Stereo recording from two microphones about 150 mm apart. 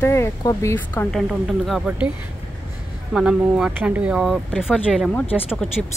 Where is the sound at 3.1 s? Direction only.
5° right (ahead or behind).